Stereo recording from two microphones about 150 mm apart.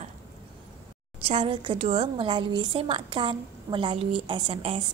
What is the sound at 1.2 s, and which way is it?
A woman's voice, 40° right (ahead or behind).